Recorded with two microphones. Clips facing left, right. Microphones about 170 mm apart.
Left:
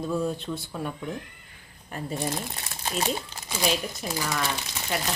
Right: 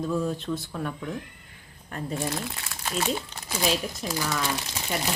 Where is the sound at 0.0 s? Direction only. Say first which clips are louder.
Even; centre (ahead or behind).